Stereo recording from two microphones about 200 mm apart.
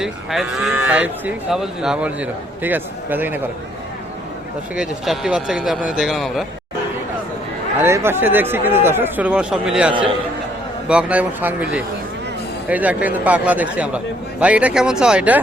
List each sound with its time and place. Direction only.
0.0 s speech: centre (ahead or behind)
4.7 s speech: centre (ahead or behind)
7.8 s speech: 10° right (ahead or behind)